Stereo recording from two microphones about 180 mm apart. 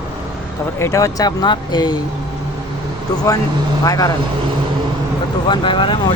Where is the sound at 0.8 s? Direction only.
15° left (ahead or behind).